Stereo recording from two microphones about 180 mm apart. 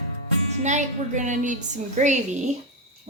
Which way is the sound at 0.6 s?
40° right (ahead or behind).